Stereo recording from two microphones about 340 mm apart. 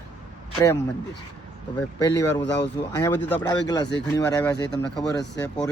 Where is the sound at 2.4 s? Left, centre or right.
Left.